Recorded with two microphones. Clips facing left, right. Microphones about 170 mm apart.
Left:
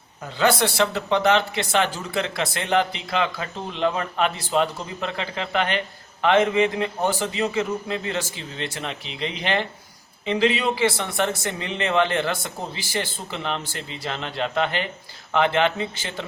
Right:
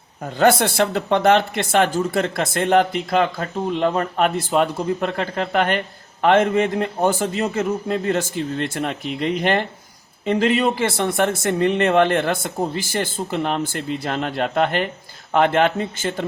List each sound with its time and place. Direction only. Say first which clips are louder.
0.2 s speech: right 4 dB; 50° right (ahead or behind)